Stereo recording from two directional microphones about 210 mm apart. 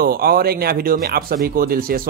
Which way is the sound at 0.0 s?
45° right (ahead or behind).